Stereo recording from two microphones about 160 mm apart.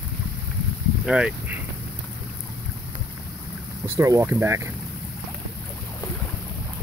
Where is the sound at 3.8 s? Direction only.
15° right (ahead or behind).